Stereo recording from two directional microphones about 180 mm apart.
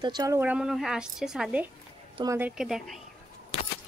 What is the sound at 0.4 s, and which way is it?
A woman's voice, 5° right (ahead or behind).